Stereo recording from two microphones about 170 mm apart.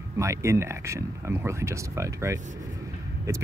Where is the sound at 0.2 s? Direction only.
15° right (ahead or behind).